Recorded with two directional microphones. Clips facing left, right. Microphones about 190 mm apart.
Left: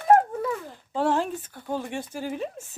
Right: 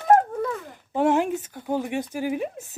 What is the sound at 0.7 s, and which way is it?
Speech, 15° right (ahead or behind).